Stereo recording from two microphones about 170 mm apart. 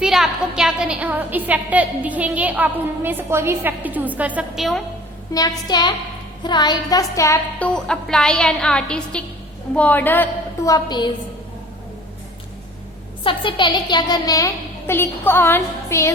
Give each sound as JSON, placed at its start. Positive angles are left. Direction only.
{"t": 0.0, "sound": "a woman's voice", "side_deg": -5}
{"t": 5.3, "sound": "a woman's voice", "side_deg": 25}
{"t": 7.7, "sound": "a woman's voice", "side_deg": 5}
{"t": 10.7, "sound": "a woman's voice", "side_deg": 25}
{"t": 13.2, "sound": "a woman's voice", "side_deg": 30}